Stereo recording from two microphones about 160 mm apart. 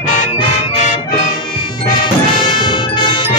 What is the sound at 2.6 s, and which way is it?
Music, 30° left (ahead or behind).